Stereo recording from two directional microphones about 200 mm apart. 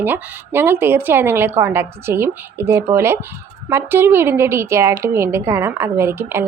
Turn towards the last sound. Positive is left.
turn(degrees=-10)  # may be behind; listen again after turning